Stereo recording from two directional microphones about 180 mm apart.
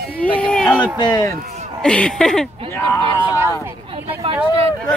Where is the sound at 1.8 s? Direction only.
5° left (ahead or behind).